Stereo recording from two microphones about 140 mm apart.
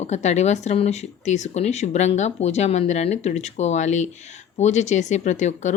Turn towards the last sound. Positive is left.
turn(degrees=60)  # may be behind; listen again after turning